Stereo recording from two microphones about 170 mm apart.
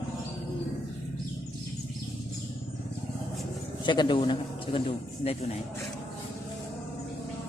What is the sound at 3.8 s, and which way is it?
A man's voice, 25° left (ahead or behind).